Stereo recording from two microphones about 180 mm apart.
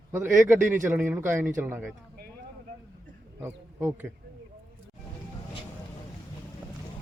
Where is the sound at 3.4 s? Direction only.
15° right (ahead or behind).